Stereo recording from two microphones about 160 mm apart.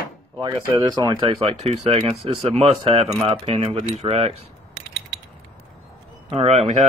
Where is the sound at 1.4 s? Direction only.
40° right (ahead or behind).